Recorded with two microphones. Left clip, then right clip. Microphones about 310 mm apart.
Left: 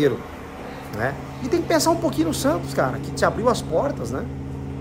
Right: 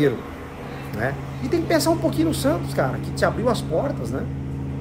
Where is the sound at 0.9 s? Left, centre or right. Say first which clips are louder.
Left 1 dB; centre.